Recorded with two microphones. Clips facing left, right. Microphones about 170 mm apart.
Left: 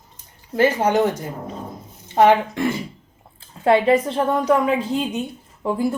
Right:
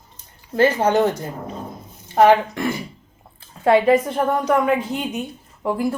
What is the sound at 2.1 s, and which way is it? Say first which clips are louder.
A woman's voice: right 1 dB; 20° left (ahead or behind).